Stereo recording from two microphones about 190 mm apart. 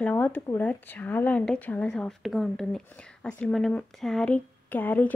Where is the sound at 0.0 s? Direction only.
10° left (ahead or behind).